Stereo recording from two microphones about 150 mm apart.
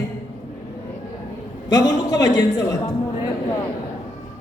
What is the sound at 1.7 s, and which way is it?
A man's voice, 25° left (ahead or behind).